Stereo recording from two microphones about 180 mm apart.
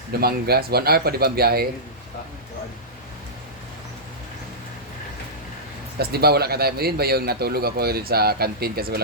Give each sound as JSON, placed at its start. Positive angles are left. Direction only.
{"t": 0.1, "sound": "speech", "side_deg": -60}
{"t": 6.0, "sound": "speech", "side_deg": -60}